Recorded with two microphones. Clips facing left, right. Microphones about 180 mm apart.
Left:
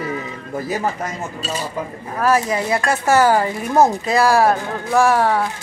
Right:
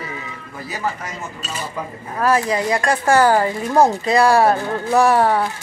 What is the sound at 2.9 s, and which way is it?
Speech, 5° left (ahead or behind).